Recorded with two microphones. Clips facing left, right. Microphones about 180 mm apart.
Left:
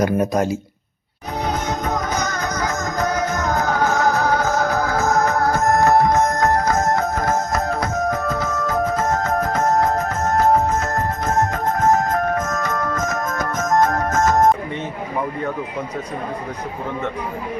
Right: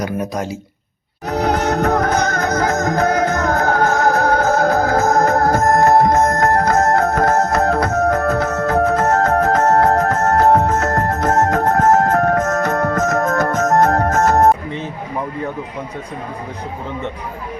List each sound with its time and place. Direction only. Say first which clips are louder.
0.0 s speech: left 4 dB; 50° left (ahead or behind)
1.3 s music: right 6 dB; 70° right (ahead or behind)